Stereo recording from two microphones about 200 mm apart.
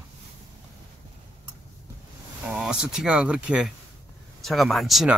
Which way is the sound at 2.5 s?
5° right (ahead or behind).